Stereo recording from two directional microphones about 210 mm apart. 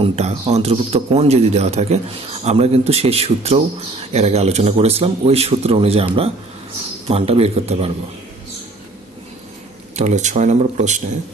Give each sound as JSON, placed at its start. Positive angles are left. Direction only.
{"t": 0.0, "sound": "a man's voice", "side_deg": -30}
{"t": 9.9, "sound": "a man's voice", "side_deg": -35}